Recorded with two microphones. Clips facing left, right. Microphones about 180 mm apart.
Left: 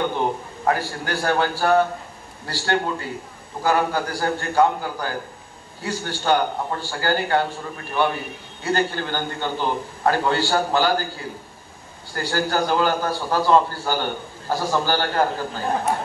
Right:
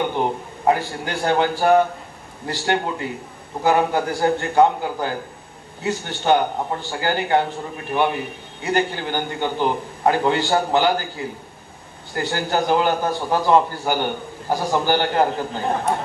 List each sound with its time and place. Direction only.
0.7 s a man's voice: 20° right (ahead or behind)